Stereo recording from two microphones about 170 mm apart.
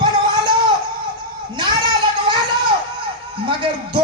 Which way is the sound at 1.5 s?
25° right (ahead or behind).